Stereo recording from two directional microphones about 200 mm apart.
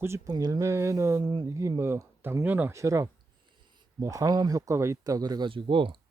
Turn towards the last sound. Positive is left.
turn(degrees=-25)  # may be behind; listen again after turning